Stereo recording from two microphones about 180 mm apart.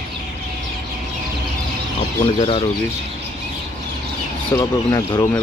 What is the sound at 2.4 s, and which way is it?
Speech, 30° left (ahead or behind).